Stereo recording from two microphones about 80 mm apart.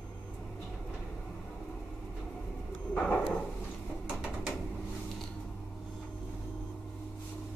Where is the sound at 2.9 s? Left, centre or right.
Centre.